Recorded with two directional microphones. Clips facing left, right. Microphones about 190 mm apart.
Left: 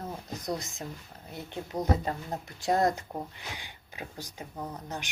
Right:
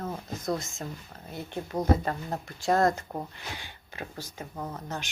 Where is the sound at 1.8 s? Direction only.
20° left (ahead or behind).